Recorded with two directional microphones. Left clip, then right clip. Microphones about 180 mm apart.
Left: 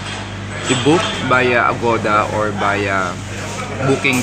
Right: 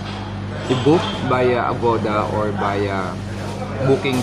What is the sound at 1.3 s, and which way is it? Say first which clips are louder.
Speech: left 4 dB; centre (ahead or behind).